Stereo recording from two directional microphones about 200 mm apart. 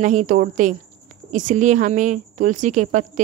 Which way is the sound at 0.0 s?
40° right (ahead or behind).